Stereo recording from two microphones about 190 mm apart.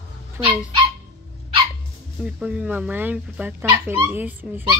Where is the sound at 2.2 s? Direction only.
5° right (ahead or behind).